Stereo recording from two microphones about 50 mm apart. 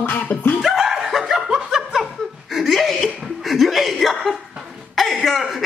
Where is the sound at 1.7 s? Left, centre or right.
Centre.